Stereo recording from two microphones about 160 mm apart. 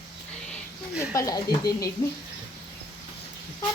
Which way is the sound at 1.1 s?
20° left (ahead or behind).